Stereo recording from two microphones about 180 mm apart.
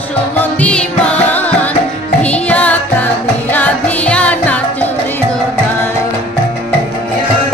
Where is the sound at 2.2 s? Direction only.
10° left (ahead or behind).